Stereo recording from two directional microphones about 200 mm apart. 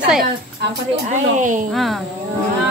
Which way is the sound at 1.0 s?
40° right (ahead or behind).